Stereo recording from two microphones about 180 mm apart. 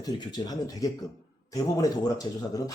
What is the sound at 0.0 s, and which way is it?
Speech, 20° left (ahead or behind).